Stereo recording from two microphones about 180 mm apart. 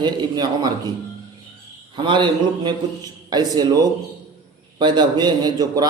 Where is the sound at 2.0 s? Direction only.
25° right (ahead or behind).